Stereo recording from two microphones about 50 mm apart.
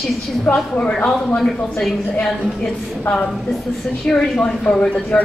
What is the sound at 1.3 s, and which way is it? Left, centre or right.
Speech, centre.